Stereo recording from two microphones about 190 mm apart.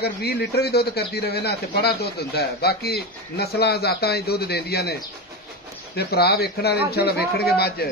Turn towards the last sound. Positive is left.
turn(degrees=55)  # may be behind; listen again after turning